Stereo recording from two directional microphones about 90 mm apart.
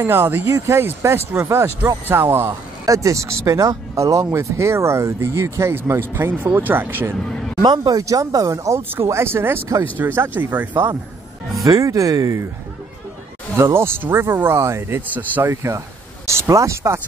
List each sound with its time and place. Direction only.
0.0 s speech: 25° right (ahead or behind)
2.8 s speech: 35° right (ahead or behind)
7.2 s a sound: 5° left (ahead or behind)
7.6 s speech: 50° right (ahead or behind); by 10.7 s 20° right (ahead or behind)
11.6 s speech: 40° right (ahead or behind)
13.6 s speech: 30° right (ahead or behind)
15.4 s speech: 35° right (ahead or behind)